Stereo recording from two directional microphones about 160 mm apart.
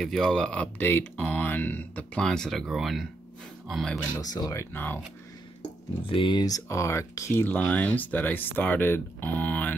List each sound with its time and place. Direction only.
0.0 s speech: centre (ahead or behind)
4.1 s speech: 25° left (ahead or behind)
6.0 s speech: 30° left (ahead or behind); by 9.8 s 10° left (ahead or behind)